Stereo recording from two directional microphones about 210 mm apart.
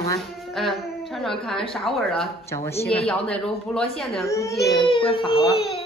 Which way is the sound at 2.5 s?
10° left (ahead or behind).